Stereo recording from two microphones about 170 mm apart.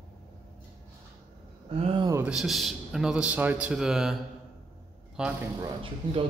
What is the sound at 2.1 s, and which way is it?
A man's voice, 5° right (ahead or behind).